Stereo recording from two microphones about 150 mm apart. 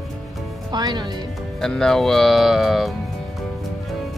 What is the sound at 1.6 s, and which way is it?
Speech, 5° left (ahead or behind).